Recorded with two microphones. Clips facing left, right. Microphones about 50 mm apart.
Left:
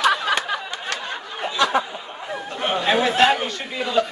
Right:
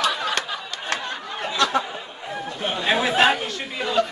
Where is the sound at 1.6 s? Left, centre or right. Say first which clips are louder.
Left 2 dB; centre.